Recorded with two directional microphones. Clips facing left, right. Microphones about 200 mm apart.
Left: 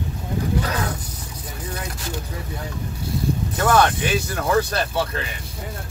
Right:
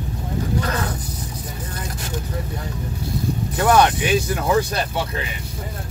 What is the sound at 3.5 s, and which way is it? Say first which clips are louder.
Speech: right 2 dB; 15° right (ahead or behind).